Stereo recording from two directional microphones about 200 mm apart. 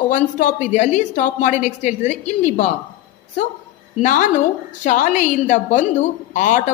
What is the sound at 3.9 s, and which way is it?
A woman's voice, 40° left (ahead or behind).